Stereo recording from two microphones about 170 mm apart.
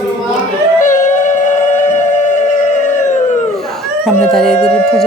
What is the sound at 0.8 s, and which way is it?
Howl, 45° left (ahead or behind).